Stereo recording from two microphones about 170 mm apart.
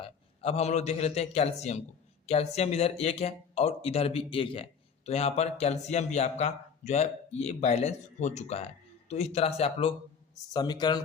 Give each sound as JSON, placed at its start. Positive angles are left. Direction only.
{"t": 0.0, "sound": "a man's voice", "side_deg": 35}
{"t": 10.5, "sound": "speech", "side_deg": 25}